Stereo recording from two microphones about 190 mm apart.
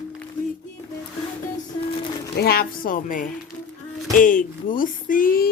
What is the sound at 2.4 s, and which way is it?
Speech, 55° left (ahead or behind).